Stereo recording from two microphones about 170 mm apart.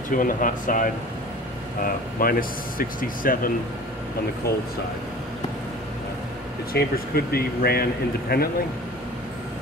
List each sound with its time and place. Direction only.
0.1 s speech: 55° left (ahead or behind)
6.7 s speech: 65° left (ahead or behind)